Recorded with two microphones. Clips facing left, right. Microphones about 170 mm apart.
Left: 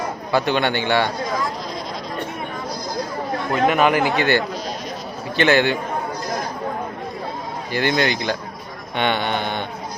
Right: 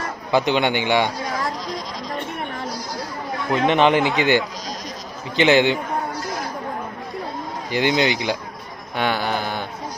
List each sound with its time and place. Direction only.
0.3 s speech: 20° right (ahead or behind)
3.7 s a man's voice: 25° right (ahead or behind)
7.7 s speech: 15° right (ahead or behind)
9.0 s speech: centre (ahead or behind)